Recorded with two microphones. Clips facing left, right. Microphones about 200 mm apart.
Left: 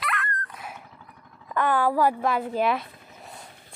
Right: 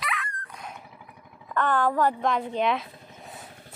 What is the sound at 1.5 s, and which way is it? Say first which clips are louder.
Speech: left 1 dB; 10° left (ahead or behind).